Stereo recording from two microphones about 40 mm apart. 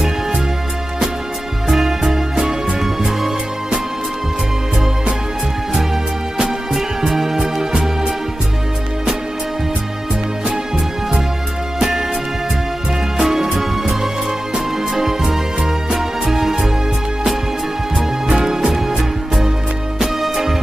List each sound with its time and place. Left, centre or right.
1.7 s music: centre
6.3 s music: centre
13.2 s music: centre
15.0 s music: centre
17.9 s music: centre